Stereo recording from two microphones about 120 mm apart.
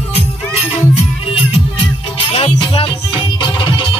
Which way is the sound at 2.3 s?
50° left (ahead or behind).